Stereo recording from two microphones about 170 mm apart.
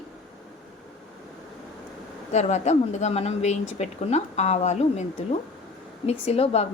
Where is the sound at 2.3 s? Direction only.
40° left (ahead or behind).